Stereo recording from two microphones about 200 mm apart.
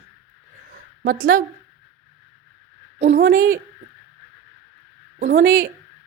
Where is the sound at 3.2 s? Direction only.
50° right (ahead or behind).